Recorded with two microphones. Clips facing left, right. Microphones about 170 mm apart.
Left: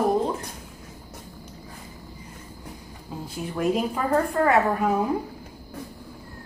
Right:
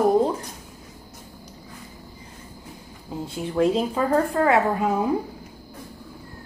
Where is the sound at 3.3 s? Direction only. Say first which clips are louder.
Right 4 dB; 25° right (ahead or behind).